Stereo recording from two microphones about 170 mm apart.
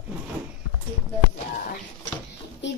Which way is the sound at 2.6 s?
90° left.